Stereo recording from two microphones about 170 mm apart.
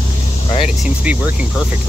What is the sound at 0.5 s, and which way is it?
Speech, 30° left (ahead or behind).